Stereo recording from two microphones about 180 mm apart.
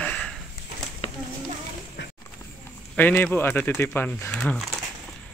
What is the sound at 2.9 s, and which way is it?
Speech, 10° left (ahead or behind).